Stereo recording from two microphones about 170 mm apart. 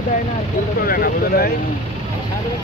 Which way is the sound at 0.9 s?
60° left (ahead or behind).